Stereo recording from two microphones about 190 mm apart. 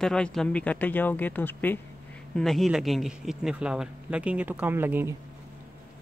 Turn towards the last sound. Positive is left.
turn(degrees=-10)  # may be behind; listen again after turning